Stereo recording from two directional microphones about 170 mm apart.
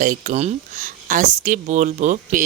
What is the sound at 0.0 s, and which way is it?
A woman's voice, 50° right (ahead or behind).